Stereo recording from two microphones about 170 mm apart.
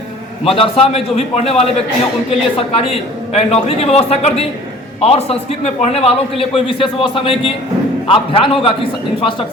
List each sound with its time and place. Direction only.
0.4 s a man's voice: 35° left (ahead or behind)